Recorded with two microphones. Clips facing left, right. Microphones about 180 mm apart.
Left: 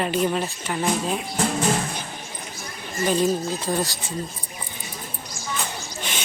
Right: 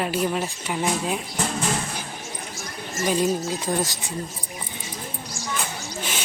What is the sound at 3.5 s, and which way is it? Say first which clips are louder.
Speech: even; 15° right (ahead or behind).